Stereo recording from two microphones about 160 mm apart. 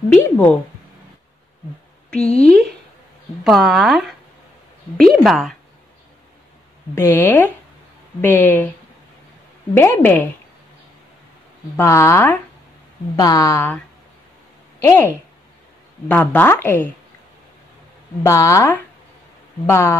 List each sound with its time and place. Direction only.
0.1 s a woman's voice: 10° left (ahead or behind)
2.1 s speech: 40° left (ahead or behind)
3.4 s speech: centre (ahead or behind)
7.0 s a woman's voice: 15° left (ahead or behind)
9.8 s a woman's voice: 10° left (ahead or behind)
11.7 s a woman's voice: 15° left (ahead or behind)
14.8 s a woman's voice: 15° left (ahead or behind)
18.2 s a woman's voice: 20° left (ahead or behind)